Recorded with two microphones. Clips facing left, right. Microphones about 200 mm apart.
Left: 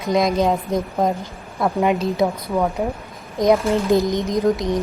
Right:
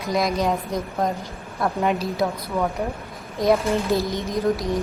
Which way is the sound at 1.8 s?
15° left (ahead or behind).